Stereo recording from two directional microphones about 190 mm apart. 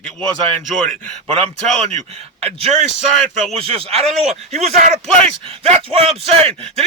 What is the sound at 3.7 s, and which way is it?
Speech, 30° right (ahead or behind).